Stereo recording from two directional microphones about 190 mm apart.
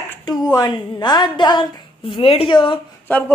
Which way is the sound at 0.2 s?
20° left (ahead or behind).